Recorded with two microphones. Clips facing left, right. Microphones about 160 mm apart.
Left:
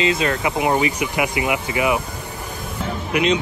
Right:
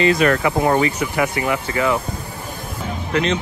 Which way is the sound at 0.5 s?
10° left (ahead or behind).